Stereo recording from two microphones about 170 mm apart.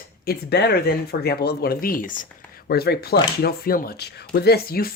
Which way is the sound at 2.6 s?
65° left (ahead or behind).